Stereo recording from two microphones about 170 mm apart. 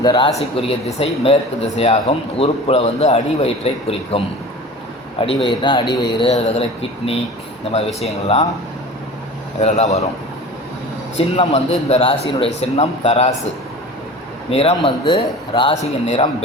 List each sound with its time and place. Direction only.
0.0 s speech: 25° left (ahead or behind)
0.3 s speech: 40° left (ahead or behind)
5.2 s speech: 30° left (ahead or behind)
9.6 s speech: 40° left (ahead or behind)
11.2 s speech: 35° left (ahead or behind)
14.5 s speech: 35° left (ahead or behind)